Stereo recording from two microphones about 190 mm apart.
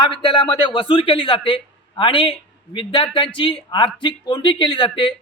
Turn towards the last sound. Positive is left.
turn(degrees=25)  # may be behind; listen again after turning